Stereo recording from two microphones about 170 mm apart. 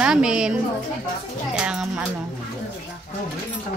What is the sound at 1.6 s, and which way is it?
Speech, 5° right (ahead or behind).